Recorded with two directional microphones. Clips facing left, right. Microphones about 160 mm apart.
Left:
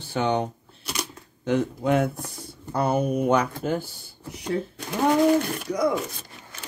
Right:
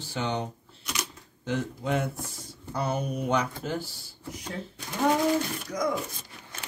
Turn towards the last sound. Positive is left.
turn(degrees=65)  # may be behind; listen again after turning